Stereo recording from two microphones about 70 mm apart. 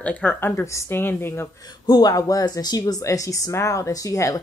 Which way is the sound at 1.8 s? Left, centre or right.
Left.